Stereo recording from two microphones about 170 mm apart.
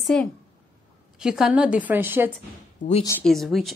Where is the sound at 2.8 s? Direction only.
45° left (ahead or behind).